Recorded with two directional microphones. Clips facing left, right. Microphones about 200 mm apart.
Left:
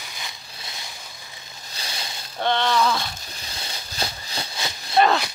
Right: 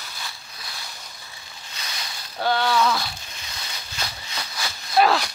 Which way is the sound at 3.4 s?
35° left (ahead or behind).